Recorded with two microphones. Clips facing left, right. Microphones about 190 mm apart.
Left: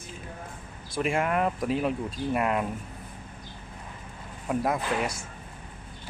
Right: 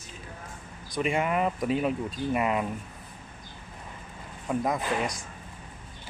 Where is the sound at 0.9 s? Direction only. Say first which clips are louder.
Even; centre (ahead or behind).